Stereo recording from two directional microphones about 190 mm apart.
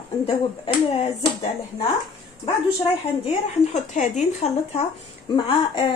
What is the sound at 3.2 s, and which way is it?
Speech, 35° left (ahead or behind).